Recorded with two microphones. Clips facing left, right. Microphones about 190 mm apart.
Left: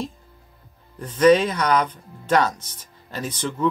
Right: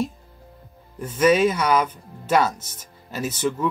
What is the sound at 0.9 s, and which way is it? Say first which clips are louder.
Speech: left 3 dB; 5° right (ahead or behind).